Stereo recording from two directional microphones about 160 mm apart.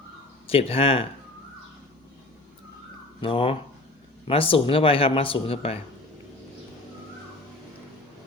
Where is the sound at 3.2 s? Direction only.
35° left (ahead or behind).